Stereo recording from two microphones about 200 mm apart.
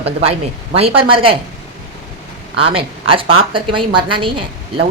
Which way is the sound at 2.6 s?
25° right (ahead or behind).